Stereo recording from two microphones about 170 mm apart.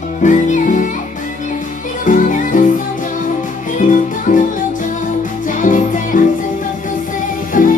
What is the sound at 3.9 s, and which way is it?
Music, 50° left (ahead or behind).